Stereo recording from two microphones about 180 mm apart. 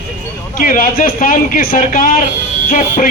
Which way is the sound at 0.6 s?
50° left (ahead or behind).